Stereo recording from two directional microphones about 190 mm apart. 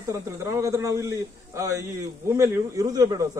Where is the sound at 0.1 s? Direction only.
15° right (ahead or behind).